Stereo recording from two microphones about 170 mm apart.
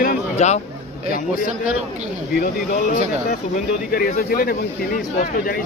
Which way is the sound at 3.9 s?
60° left (ahead or behind).